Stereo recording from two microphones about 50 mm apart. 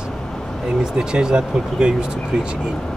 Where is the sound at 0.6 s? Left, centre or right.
Centre.